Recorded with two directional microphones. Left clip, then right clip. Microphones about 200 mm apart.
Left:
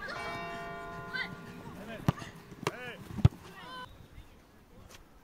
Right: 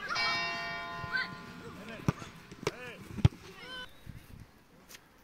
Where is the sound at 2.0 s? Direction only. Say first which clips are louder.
Left 2 dB; centre (ahead or behind).